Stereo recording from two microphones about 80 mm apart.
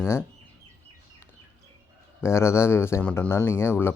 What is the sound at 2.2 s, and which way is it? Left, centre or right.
Speech, left.